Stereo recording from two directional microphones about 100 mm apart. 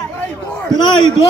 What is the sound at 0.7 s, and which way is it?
Speech, 50° left (ahead or behind).